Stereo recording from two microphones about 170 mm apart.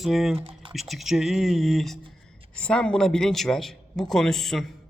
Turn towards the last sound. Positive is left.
turn(degrees=0)  # may be behind; listen again after turning